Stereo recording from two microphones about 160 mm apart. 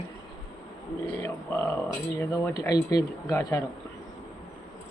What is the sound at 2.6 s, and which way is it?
Speech, 25° left (ahead or behind).